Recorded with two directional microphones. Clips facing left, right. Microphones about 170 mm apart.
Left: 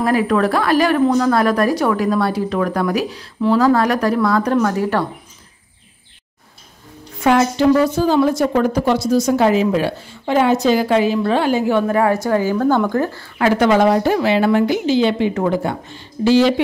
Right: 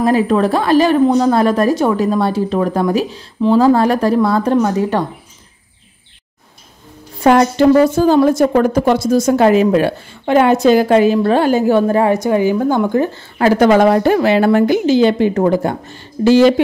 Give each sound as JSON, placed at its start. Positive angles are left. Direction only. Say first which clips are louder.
{"t": 0.0, "sound": "a woman's voice", "louder": "right 3 dB", "side_deg": -25}
{"t": 7.2, "sound": "speech", "louder": "right 4 dB", "side_deg": -50}
{"t": 12.0, "sound": "speech", "louder": "right 3 dB", "side_deg": -20}
{"t": 13.4, "sound": "speech", "louder": "right 3 dB", "side_deg": -40}